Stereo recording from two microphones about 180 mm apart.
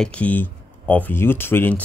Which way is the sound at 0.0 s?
5° left (ahead or behind).